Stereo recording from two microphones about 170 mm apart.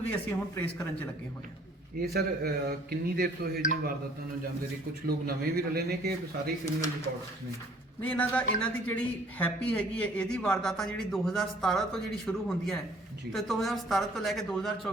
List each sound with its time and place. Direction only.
0.1 s a man's voice: 10° left (ahead or behind)
2.0 s speech: 65° right (ahead or behind)
5.0 s speech: 65° right (ahead or behind)
8.0 s a man's voice: 10° left (ahead or behind)